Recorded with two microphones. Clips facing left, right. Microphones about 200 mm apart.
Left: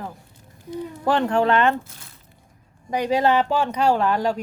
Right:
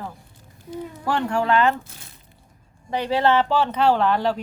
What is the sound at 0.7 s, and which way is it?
Speech, 20° left (ahead or behind).